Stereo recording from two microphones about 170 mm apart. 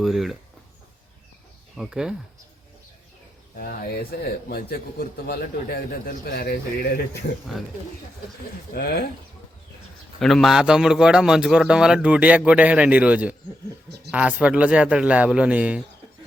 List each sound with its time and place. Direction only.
0.0 s a man's voice: centre (ahead or behind)
1.7 s a man's voice: centre (ahead or behind)
3.6 s a man's voice: 65° left (ahead or behind)
8.7 s speech: 65° left (ahead or behind)
10.2 s a man's voice: centre (ahead or behind)